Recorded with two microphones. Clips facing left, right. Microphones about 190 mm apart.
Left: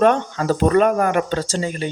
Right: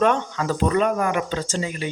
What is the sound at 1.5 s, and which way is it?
Speech, 35° left (ahead or behind).